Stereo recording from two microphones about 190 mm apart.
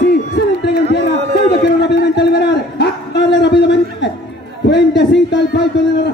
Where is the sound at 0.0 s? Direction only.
60° left (ahead or behind).